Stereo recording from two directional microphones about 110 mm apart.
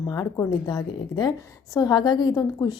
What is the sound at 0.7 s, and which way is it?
A woman's voice, 40° left (ahead or behind).